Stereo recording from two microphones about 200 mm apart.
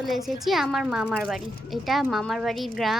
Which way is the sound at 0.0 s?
Centre (ahead or behind).